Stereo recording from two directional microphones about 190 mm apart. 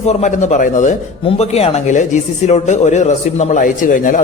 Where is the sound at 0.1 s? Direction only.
35° left (ahead or behind).